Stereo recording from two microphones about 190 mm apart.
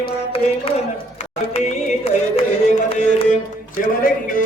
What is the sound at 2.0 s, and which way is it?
Music, 35° left (ahead or behind).